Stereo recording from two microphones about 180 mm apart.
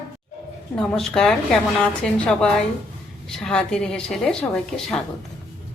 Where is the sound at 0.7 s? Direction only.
5° left (ahead or behind).